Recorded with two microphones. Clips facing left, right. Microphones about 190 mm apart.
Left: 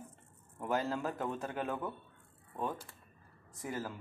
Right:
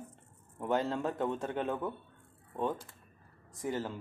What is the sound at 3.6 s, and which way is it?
Speech, 25° right (ahead or behind).